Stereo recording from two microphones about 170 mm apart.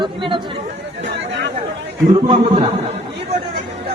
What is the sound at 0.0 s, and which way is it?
Speech, 30° right (ahead or behind).